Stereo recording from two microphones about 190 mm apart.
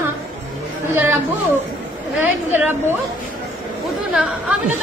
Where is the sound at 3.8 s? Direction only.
Centre (ahead or behind).